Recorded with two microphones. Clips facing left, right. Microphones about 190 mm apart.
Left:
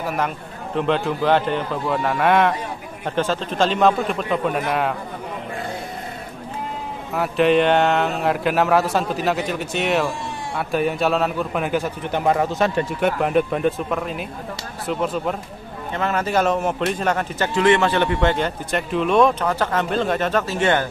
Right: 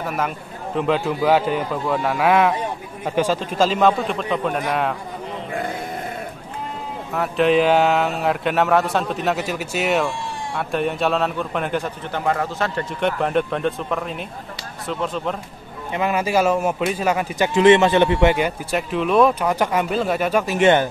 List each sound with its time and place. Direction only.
0.0 s speech: centre (ahead or behind)
7.2 s speech: centre (ahead or behind)
12.1 s a man's voice: 15° left (ahead or behind)
13.0 s speech: 5° left (ahead or behind)
15.9 s speech: 10° right (ahead or behind)
17.6 s speech: 20° right (ahead or behind); by 19.3 s centre (ahead or behind)
19.4 s speech: 15° right (ahead or behind)